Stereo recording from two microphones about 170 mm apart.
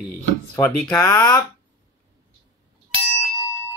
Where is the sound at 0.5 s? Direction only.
10° left (ahead or behind).